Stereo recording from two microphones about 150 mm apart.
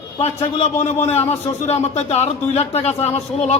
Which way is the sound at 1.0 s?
45° left (ahead or behind).